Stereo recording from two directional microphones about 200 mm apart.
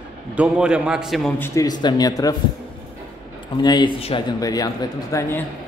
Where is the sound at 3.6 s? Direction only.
20° left (ahead or behind).